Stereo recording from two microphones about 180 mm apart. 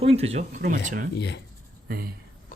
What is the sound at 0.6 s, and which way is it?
Speech, 50° right (ahead or behind).